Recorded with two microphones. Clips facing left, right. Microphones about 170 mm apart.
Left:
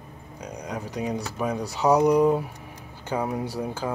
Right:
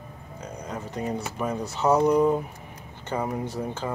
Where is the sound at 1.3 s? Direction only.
10° left (ahead or behind).